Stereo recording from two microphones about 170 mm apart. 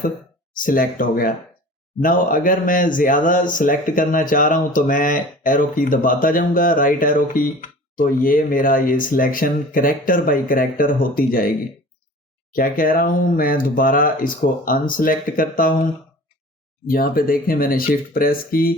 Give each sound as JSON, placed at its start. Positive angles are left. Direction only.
{"t": 0.5, "sound": "speech", "side_deg": 55}
{"t": 12.5, "sound": "speech", "side_deg": 55}
{"t": 16.8, "sound": "speech", "side_deg": 60}